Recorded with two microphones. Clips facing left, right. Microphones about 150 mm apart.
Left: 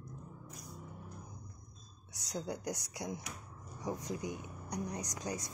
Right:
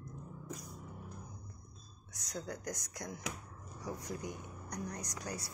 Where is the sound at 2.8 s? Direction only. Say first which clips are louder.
Left 1 dB; 15° left (ahead or behind).